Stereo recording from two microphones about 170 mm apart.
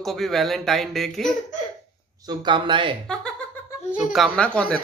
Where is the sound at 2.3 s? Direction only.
25° right (ahead or behind).